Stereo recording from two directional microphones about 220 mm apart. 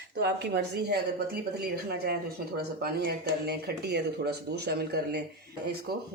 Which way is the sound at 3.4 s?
45° right (ahead or behind).